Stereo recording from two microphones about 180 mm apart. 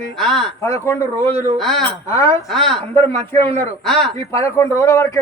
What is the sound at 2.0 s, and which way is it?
Speech, 15° left (ahead or behind).